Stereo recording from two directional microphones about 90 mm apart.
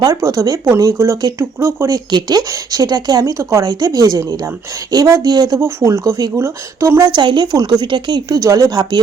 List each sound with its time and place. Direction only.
0.0 s speech: 40° right (ahead or behind)
2.0 s speech: 50° right (ahead or behind)
5.5 s speech: 35° right (ahead or behind)
7.0 s speech: 60° right (ahead or behind)
8.4 s speech: 35° right (ahead or behind)